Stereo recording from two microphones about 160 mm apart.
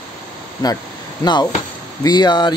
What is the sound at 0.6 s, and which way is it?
Speech, 25° left (ahead or behind).